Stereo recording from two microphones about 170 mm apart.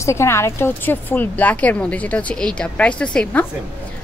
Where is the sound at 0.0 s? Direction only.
15° left (ahead or behind).